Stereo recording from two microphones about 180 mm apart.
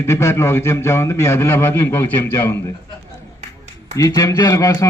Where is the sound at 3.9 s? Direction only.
20° left (ahead or behind).